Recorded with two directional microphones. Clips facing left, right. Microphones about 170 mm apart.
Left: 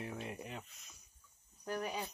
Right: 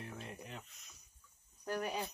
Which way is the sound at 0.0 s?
5° left (ahead or behind).